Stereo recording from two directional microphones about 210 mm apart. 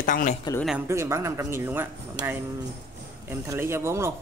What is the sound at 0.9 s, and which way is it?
Speech, 15° right (ahead or behind).